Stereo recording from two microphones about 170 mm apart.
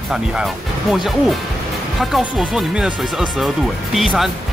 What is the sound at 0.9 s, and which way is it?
Speech, centre (ahead or behind).